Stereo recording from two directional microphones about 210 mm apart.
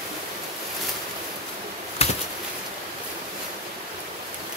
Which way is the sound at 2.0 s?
30° left (ahead or behind).